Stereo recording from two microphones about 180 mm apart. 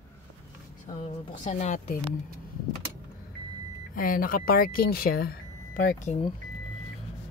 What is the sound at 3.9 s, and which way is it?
Speech, 50° left (ahead or behind).